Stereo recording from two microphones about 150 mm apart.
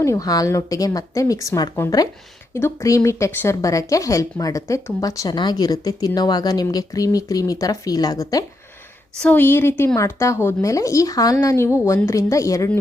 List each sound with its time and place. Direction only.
0.0 s speech: 20° left (ahead or behind)
9.2 s speech: 15° left (ahead or behind)